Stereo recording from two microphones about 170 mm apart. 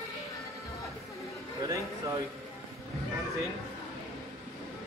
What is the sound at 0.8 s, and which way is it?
Music, 20° left (ahead or behind).